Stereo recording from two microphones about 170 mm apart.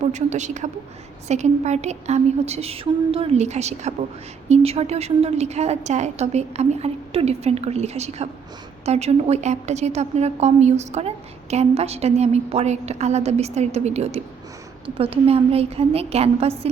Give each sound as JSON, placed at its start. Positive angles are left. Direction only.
{"t": 0.0, "sound": "a woman's voice", "side_deg": -45}